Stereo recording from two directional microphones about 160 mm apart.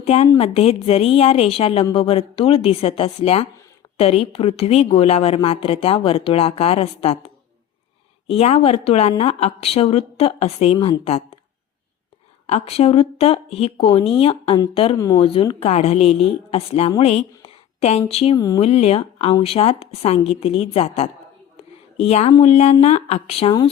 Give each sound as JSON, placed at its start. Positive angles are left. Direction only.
{"t": 0.0, "sound": "a woman's voice", "side_deg": 40}
{"t": 8.3, "sound": "a woman's voice", "side_deg": 40}
{"t": 12.5, "sound": "a woman's voice", "side_deg": 40}
{"t": 14.9, "sound": "speech", "side_deg": 20}
{"t": 15.2, "sound": "a woman's voice", "side_deg": 35}
{"t": 17.0, "sound": "a sound", "side_deg": 40}
{"t": 18.1, "sound": "a woman's voice", "side_deg": 35}
{"t": 18.3, "sound": "speech", "side_deg": 20}
{"t": 18.6, "sound": "a woman's voice", "side_deg": 40}